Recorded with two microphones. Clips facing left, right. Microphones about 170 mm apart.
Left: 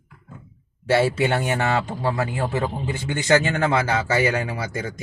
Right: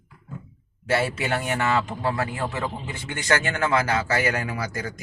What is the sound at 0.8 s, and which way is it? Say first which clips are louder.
A man's voice: left 5 dB; 30° left (ahead or behind).